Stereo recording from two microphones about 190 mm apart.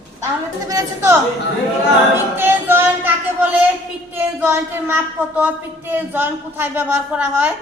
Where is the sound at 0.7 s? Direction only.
15° right (ahead or behind).